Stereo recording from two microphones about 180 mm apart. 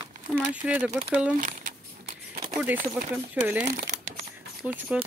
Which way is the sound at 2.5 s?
10° right (ahead or behind).